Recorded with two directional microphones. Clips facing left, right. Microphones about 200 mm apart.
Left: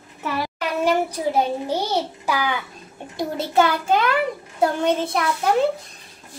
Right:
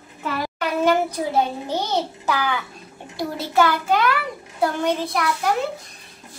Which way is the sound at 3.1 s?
20° left (ahead or behind).